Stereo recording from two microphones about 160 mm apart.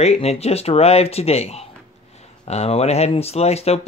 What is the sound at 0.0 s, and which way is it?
Speech, 40° left (ahead or behind).